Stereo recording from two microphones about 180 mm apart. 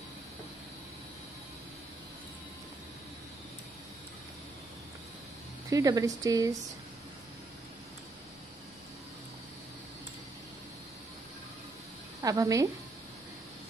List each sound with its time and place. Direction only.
5.7 s speech: 20° right (ahead or behind)
12.2 s a woman's voice: 20° right (ahead or behind)